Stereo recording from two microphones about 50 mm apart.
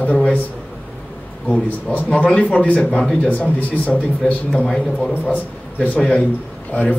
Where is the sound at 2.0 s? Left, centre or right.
Left.